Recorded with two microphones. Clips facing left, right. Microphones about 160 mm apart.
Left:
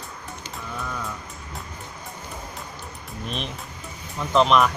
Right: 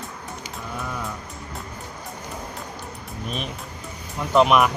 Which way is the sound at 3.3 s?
5° right (ahead or behind).